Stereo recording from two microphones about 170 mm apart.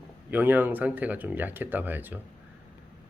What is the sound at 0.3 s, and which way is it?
Speech, 10° right (ahead or behind).